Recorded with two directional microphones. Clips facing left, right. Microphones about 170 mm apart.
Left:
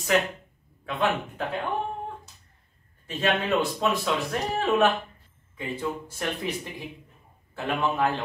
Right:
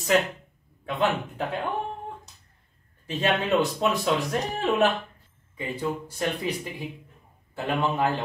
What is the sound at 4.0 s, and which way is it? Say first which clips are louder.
Speech: right 2 dB; 15° right (ahead or behind).